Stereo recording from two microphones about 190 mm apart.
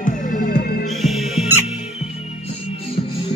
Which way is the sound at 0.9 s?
Centre (ahead or behind).